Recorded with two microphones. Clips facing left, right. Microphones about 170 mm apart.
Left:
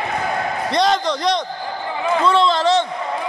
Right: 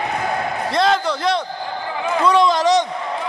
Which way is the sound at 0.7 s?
5° right (ahead or behind).